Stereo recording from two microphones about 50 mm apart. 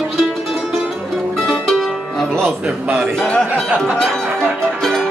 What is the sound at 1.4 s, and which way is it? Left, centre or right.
Music, centre.